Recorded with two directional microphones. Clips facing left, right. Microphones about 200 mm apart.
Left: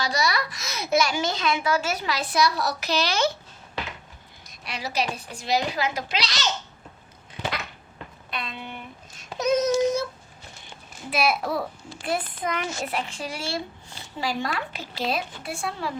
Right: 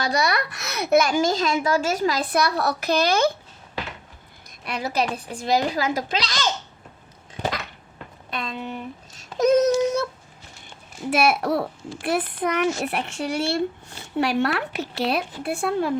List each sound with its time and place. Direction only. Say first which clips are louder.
0.0 s a child's voice: right 3 dB; 55° right (ahead or behind)
4.6 s a child's voice: right 4 dB; 55° right (ahead or behind)
8.3 s speech: right 5 dB; 45° right (ahead or behind)
9.4 s speech: right 4 dB; 60° right (ahead or behind)
11.3 s a child's voice: right 4 dB; 75° right (ahead or behind); by 15.9 s 55° right (ahead or behind)